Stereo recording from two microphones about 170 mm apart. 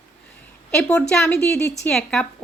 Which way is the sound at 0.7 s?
5° left (ahead or behind).